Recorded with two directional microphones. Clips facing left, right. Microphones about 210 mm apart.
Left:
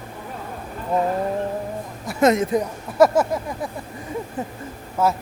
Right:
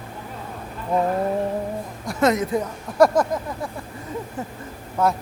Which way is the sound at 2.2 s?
20° left (ahead or behind).